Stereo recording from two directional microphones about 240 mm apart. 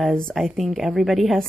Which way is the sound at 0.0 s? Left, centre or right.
Centre.